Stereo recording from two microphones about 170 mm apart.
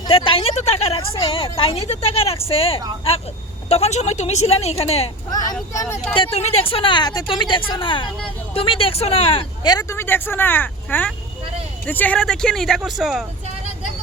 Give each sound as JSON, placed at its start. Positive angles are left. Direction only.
{"t": 0.1, "sound": "a woman's voice", "side_deg": 30}
{"t": 6.3, "sound": "speech", "side_deg": 35}